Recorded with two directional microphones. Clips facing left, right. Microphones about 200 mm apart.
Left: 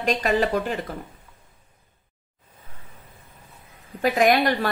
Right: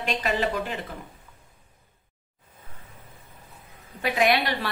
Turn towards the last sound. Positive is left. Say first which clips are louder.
# left 4 dB
turn(degrees=45)  # may be behind; listen again after turning